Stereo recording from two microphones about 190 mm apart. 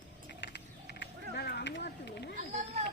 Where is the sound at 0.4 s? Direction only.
65° left (ahead or behind).